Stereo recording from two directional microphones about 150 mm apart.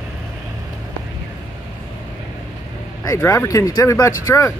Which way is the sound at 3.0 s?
20° left (ahead or behind).